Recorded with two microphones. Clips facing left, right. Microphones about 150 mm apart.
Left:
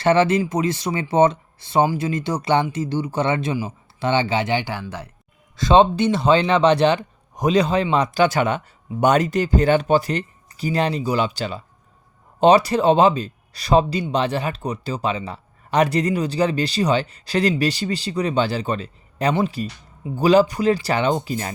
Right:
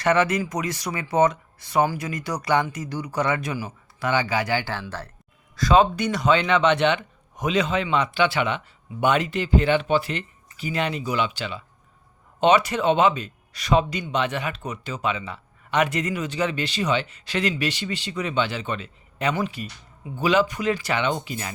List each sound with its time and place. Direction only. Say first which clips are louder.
0.0 s speech: left 4 dB; 30° left (ahead or behind); by 5.1 s 15° left (ahead or behind)
5.5 s speech: left 4 dB; 25° left (ahead or behind)